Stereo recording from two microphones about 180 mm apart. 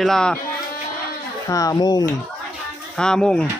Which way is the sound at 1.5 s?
20° left (ahead or behind).